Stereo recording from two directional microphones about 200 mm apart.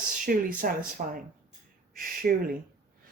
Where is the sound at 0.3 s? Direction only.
45° right (ahead or behind).